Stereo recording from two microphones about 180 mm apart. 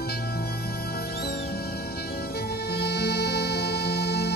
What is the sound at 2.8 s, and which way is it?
Music, 65° left (ahead or behind).